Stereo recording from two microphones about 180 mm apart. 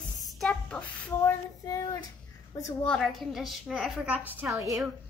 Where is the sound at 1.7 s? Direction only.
20° left (ahead or behind).